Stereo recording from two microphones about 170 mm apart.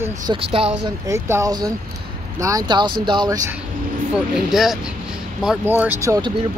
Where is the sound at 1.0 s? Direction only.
20° right (ahead or behind).